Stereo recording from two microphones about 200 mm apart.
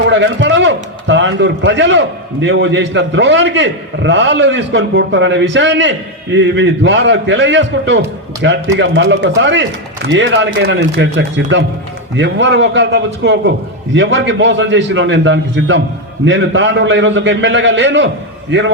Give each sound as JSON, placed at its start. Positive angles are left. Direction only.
{"t": 0.1, "sound": "a man's voice", "side_deg": -65}